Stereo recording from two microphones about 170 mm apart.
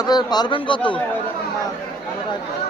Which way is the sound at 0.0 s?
25° left (ahead or behind).